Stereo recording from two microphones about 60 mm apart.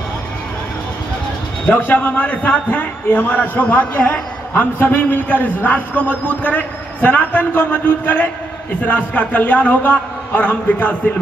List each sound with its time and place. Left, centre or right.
1.7 s a man's voice: left